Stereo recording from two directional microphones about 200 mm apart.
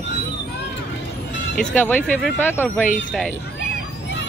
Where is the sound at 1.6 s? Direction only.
5° left (ahead or behind).